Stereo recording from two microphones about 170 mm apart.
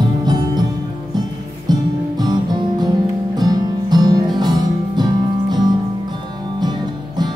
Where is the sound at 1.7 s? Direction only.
25° right (ahead or behind).